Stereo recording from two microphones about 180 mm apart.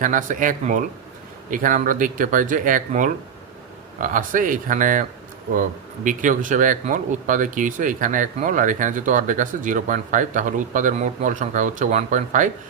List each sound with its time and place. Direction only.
0.0 s speech: 45° right (ahead or behind)
6.1 s speech: 45° right (ahead or behind)